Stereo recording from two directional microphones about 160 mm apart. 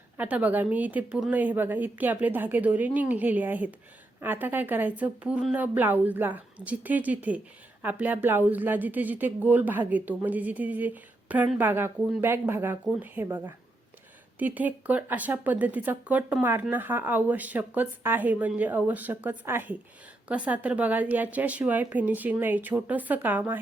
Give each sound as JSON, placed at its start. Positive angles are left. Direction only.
{"t": 0.2, "sound": "speech", "side_deg": -10}